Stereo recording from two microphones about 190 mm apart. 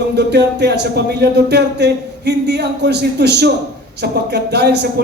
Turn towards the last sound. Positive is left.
turn(degrees=-60)  # may be behind; listen again after turning